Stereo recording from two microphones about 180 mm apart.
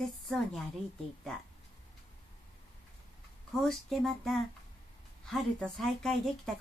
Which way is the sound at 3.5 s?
Centre (ahead or behind).